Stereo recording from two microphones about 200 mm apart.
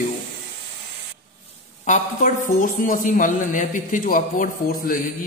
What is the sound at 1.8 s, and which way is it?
A man's voice, 40° left (ahead or behind).